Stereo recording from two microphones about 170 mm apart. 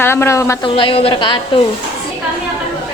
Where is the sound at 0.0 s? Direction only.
15° left (ahead or behind).